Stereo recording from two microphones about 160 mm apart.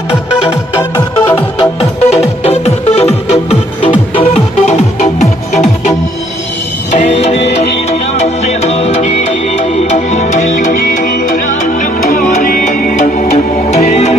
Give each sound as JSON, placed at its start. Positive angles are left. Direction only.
{"t": 0.5, "sound": "music", "side_deg": 15}
{"t": 1.6, "sound": "music", "side_deg": 40}
{"t": 6.9, "sound": "music", "side_deg": 45}